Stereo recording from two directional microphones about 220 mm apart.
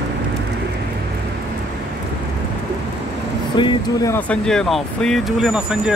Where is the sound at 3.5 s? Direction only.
20° left (ahead or behind).